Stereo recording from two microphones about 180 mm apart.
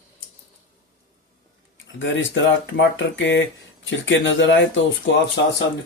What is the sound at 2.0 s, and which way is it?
Speech, 90° left.